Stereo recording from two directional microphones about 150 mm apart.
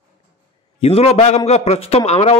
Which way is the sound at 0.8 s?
45° left (ahead or behind).